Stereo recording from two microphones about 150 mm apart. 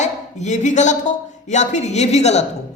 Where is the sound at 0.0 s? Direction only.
50° left (ahead or behind).